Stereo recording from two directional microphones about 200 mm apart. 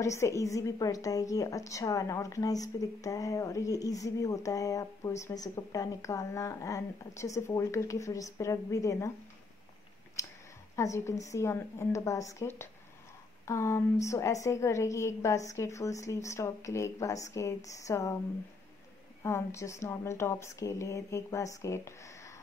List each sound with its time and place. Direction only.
0.0 s a woman's voice: 15° left (ahead or behind)
10.8 s a woman's voice: 15° left (ahead or behind)
19.2 s a woman's voice: 15° left (ahead or behind)